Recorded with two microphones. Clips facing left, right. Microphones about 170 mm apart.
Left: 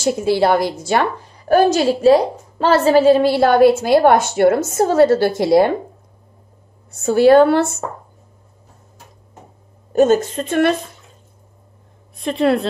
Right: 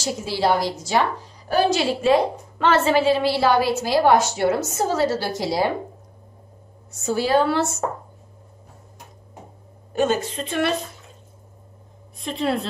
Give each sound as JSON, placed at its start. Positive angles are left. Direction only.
{"t": 0.0, "sound": "a woman's voice", "side_deg": 55}
{"t": 6.9, "sound": "a woman's voice", "side_deg": 55}
{"t": 9.9, "sound": "a woman's voice", "side_deg": 45}
{"t": 12.2, "sound": "a woman's voice", "side_deg": 65}